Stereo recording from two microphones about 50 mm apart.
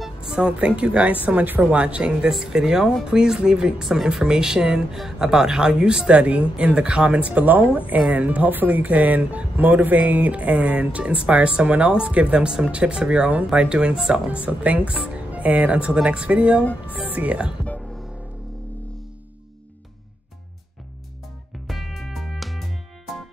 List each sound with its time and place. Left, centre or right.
0.0 s music: centre
0.4 s speech: right
1.2 s speech: right
1.6 s speech: right
14.3 s speech: right
16.6 s speech: left
17.1 s speech: right
21.6 s music: centre